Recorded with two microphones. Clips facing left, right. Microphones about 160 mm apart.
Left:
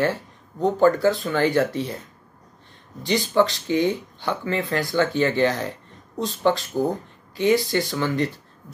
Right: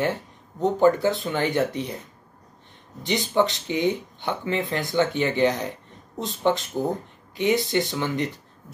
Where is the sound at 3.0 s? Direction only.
20° right (ahead or behind).